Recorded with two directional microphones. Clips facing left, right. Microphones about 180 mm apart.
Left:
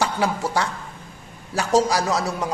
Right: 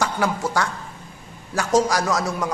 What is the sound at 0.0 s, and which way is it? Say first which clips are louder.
A woman's voice: even; 30° left (ahead or behind).